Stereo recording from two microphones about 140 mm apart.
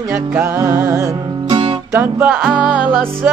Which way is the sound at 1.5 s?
35° right (ahead or behind).